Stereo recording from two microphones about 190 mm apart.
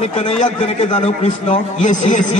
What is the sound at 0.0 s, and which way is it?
A man's voice, 35° left (ahead or behind).